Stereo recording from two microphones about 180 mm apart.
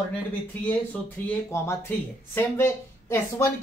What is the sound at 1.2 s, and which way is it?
Speech, 15° left (ahead or behind).